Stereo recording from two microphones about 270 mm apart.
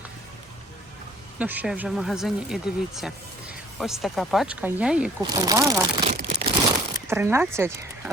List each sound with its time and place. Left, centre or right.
1.4 s speech: centre
6.1 s crumpling: right
7.1 s speech: centre